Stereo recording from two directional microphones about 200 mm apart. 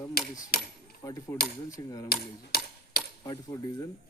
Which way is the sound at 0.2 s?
50° left (ahead or behind).